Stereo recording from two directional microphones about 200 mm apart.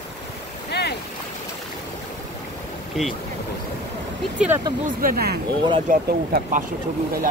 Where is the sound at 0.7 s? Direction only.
55° left (ahead or behind).